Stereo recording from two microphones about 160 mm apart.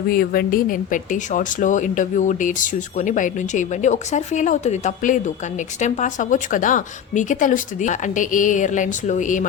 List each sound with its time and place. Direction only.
0.1 s a woman's voice: 65° left (ahead or behind)